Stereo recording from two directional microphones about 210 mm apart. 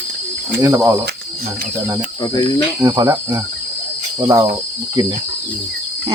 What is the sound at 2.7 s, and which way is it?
Speech, 15° right (ahead or behind).